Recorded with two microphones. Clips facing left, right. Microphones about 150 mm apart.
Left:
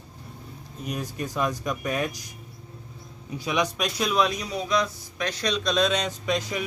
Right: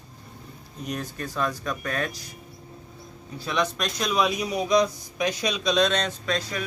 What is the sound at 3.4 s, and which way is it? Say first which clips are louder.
A man's voice: left 1 dB; 15° left (ahead or behind).